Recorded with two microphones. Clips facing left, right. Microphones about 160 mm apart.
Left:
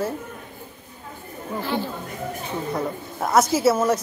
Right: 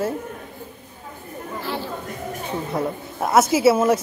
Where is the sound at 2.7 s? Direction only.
5° right (ahead or behind).